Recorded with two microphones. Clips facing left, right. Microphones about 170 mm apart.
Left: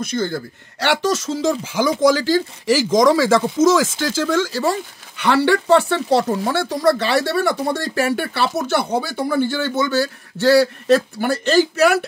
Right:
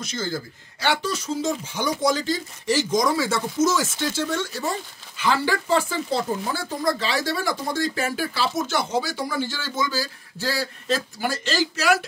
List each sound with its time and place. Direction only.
0.0 s speech: 60° left (ahead or behind)